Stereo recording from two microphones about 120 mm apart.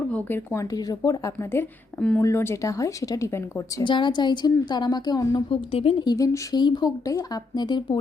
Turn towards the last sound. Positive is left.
turn(degrees=40)  # may be behind; listen again after turning